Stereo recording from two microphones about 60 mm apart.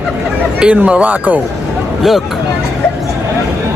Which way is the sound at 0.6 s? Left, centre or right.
Right.